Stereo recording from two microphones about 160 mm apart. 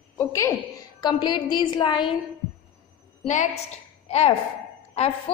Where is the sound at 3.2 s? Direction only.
50° left (ahead or behind).